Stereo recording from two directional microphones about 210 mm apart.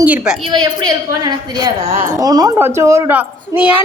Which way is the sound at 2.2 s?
15° right (ahead or behind).